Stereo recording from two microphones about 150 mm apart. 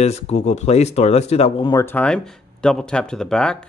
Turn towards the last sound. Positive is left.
turn(degrees=5)  # may be behind; listen again after turning